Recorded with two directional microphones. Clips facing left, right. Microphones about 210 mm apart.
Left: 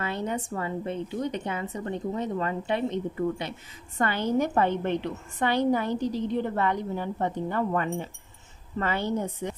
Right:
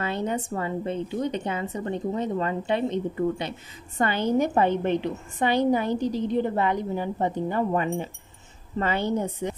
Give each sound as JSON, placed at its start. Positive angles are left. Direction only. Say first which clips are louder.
{"t": 0.0, "sound": "a woman's voice", "louder": "right 3 dB", "side_deg": -25}